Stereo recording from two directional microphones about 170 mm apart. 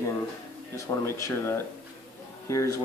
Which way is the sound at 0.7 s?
15° left (ahead or behind).